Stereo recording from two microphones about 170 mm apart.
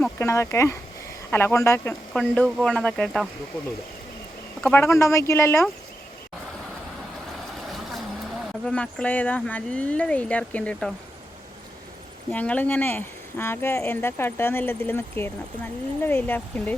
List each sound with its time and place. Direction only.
0.0 s speech: 15° left (ahead or behind)
2.1 s speech: 5° left (ahead or behind)
4.6 s speech: 10° left (ahead or behind)
8.6 s speech: 5° left (ahead or behind)
12.3 s speech: 10° left (ahead or behind)